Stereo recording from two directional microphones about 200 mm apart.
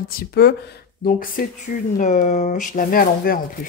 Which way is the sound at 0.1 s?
50° left (ahead or behind).